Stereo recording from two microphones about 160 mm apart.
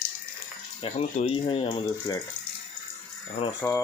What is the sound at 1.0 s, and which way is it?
Speech, 50° left (ahead or behind).